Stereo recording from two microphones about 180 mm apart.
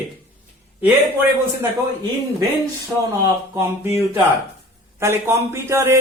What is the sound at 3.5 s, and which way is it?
A man's voice, 10° right (ahead or behind).